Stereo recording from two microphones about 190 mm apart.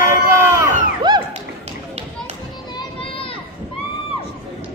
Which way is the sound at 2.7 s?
25° left (ahead or behind).